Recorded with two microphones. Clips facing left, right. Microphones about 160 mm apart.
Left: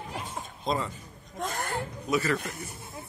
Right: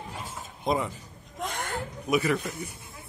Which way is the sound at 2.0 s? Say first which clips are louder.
Right 3 dB; 15° right (ahead or behind).